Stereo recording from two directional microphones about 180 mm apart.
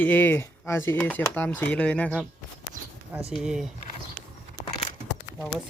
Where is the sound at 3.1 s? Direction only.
10° right (ahead or behind).